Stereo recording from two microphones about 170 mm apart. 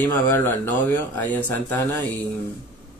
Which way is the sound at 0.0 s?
10° left (ahead or behind).